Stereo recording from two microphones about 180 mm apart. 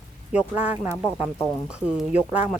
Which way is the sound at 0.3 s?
10° right (ahead or behind).